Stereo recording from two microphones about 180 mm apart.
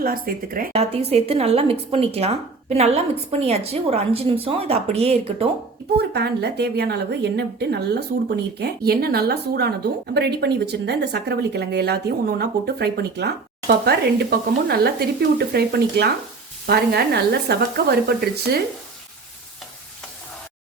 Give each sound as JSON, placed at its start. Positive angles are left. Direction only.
{"t": 0.0, "sound": "speech", "side_deg": -55}
{"t": 0.7, "sound": "speech", "side_deg": -35}
{"t": 6.0, "sound": "speech", "side_deg": -65}